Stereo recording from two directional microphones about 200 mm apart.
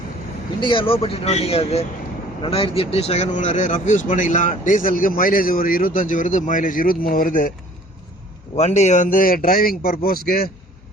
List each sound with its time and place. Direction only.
0.6 s speech: 25° left (ahead or behind); by 7.5 s 45° left (ahead or behind)
8.5 s a man's voice: 35° left (ahead or behind)